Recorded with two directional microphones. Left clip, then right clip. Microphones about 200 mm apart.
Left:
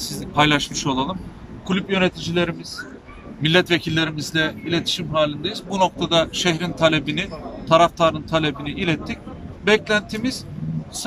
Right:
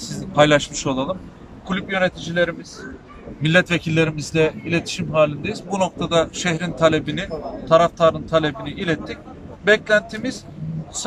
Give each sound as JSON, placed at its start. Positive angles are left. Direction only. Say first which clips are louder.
{"t": 0.0, "sound": "speech", "louder": "right 2 dB", "side_deg": 0}
{"t": 1.7, "sound": "speech", "louder": "even", "side_deg": 5}
{"t": 3.4, "sound": "a man's voice", "louder": "even", "side_deg": -5}